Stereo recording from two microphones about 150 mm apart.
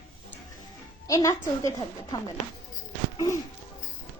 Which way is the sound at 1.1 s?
25° left (ahead or behind).